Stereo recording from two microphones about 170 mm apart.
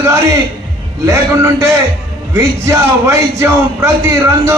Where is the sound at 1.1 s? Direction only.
15° right (ahead or behind).